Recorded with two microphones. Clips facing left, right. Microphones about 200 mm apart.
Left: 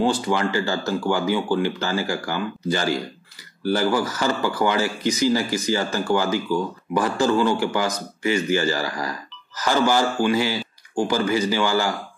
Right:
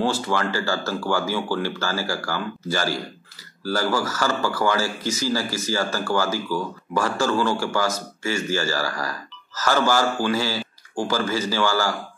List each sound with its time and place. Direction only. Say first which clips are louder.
0.0 s speech: left 2 dB; 15° left (ahead or behind)